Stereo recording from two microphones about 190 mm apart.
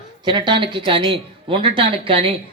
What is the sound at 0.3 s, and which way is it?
A man's voice, 25° right (ahead or behind).